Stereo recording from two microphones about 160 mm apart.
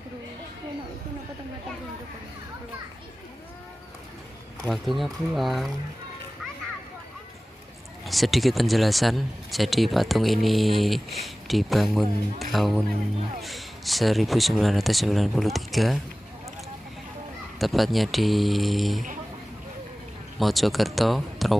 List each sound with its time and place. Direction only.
4.6 s speech: centre (ahead or behind)
8.0 s speech: centre (ahead or behind)
17.6 s speech: centre (ahead or behind)
20.3 s speech: centre (ahead or behind)